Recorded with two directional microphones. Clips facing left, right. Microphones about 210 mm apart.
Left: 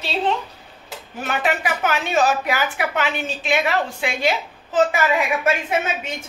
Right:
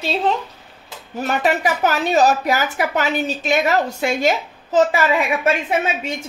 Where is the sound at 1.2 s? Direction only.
40° right (ahead or behind).